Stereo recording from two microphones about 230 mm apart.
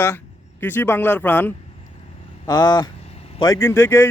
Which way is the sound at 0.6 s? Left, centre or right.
Centre.